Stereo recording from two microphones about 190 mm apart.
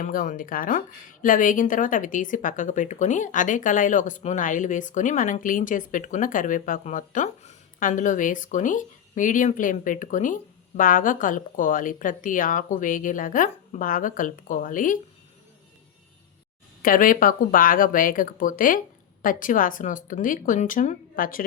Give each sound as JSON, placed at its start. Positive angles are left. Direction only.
{"t": 0.0, "sound": "a woman's voice", "side_deg": 45}
{"t": 16.8, "sound": "a woman's voice", "side_deg": 45}